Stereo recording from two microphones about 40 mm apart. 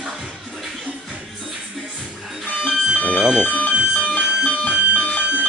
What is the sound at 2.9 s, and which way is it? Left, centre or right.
Music, left.